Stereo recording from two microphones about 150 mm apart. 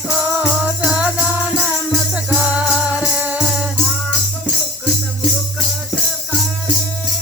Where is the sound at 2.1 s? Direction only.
10° right (ahead or behind).